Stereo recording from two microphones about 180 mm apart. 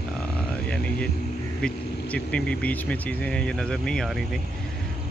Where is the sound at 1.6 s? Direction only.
5° left (ahead or behind).